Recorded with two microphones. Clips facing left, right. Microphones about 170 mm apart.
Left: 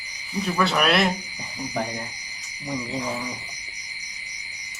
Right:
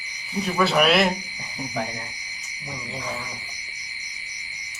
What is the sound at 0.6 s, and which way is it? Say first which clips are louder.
Speech: right 2 dB; 5° right (ahead or behind).